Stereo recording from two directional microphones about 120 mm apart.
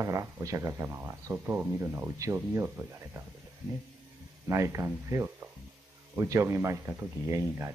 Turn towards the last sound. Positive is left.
turn(degrees=-25)  # may be behind; listen again after turning